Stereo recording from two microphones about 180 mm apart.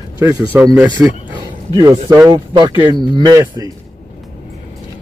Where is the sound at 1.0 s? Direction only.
5° right (ahead or behind).